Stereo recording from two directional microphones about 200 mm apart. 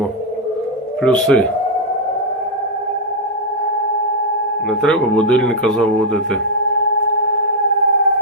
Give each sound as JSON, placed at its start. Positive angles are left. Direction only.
{"t": 1.0, "sound": "speech", "side_deg": 5}
{"t": 4.8, "sound": "speech", "side_deg": 5}